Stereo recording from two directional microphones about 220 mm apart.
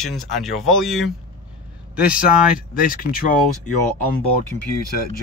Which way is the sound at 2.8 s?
40° left (ahead or behind).